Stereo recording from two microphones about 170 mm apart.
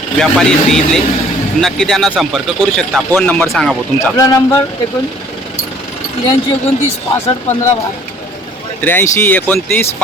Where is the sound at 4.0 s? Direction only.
15° left (ahead or behind).